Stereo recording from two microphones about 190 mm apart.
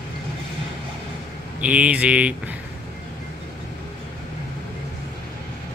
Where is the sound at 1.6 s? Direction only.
5° right (ahead or behind).